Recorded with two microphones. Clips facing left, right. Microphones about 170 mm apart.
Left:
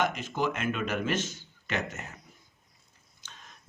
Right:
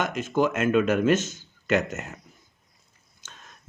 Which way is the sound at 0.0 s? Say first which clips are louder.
Right 5 dB; 50° right (ahead or behind).